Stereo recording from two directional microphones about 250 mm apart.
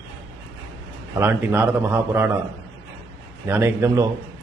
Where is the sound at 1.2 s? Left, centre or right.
Centre.